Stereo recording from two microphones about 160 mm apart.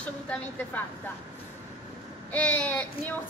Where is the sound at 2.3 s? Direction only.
10° left (ahead or behind).